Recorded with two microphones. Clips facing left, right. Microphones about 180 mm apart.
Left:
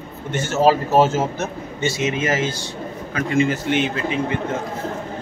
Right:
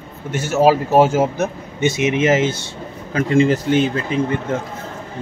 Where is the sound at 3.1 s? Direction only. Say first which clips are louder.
Right 5 dB; 30° right (ahead or behind).